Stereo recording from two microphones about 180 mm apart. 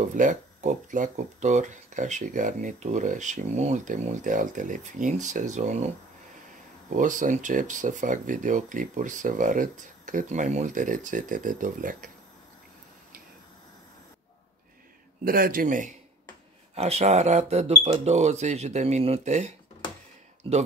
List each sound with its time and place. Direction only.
0.0 s speech: 45° right (ahead or behind)
7.0 s speech: 45° right (ahead or behind)
15.2 s speech: 55° right (ahead or behind)
16.7 s speech: 35° right (ahead or behind)